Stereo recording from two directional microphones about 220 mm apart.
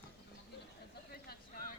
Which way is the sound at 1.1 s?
45° left (ahead or behind).